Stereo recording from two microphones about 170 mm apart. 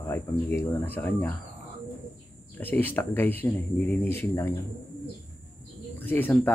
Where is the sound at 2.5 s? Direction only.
10° left (ahead or behind).